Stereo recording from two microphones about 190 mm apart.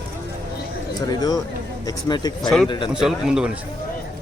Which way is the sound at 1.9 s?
20° left (ahead or behind).